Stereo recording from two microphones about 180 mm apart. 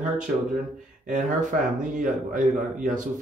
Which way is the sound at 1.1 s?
45° right (ahead or behind).